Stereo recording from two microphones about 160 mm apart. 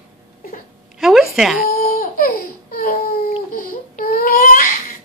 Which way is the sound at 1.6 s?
60° left (ahead or behind).